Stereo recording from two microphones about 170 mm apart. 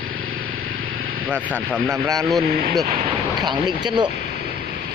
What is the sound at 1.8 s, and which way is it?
Speech, 20° right (ahead or behind).